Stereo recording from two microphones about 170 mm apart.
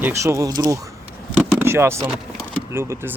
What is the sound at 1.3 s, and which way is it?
Vehicle, 15° right (ahead or behind).